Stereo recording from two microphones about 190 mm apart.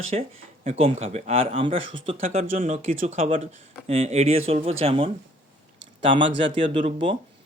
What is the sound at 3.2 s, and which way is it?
Speech, 30° right (ahead or behind).